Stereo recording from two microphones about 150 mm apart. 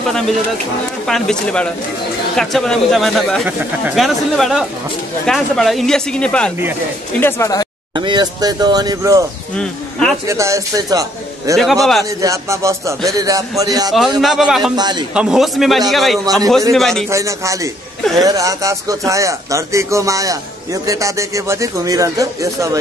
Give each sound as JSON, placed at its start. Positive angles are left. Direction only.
{"t": 1.0, "sound": "speech", "side_deg": 5}
{"t": 7.9, "sound": "speech", "side_deg": -30}
{"t": 9.6, "sound": "speech", "side_deg": 5}
{"t": 10.2, "sound": "speech", "side_deg": -20}
{"t": 11.5, "sound": "speech", "side_deg": 0}
{"t": 12.2, "sound": "speech", "side_deg": -20}
{"t": 14.2, "sound": "speech", "side_deg": -5}
{"t": 14.8, "sound": "speech", "side_deg": -30}
{"t": 15.1, "sound": "speech", "side_deg": -5}
{"t": 17.1, "sound": "speech", "side_deg": -20}